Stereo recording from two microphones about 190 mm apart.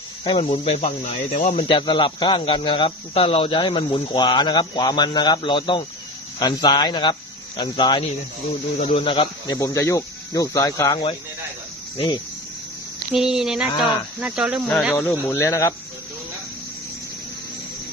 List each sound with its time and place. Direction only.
0.3 s speech: 25° left (ahead or behind)
1.6 s speech: 25° left (ahead or behind)
13.1 s speech: centre (ahead or behind)
14.9 s speech: 15° left (ahead or behind)